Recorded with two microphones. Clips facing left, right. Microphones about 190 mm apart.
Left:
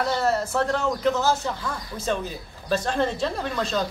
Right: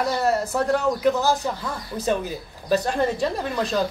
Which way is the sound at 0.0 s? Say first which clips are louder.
Right 1 dB; 15° right (ahead or behind).